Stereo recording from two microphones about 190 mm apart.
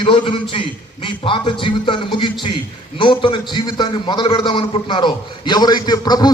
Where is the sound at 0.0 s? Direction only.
25° left (ahead or behind).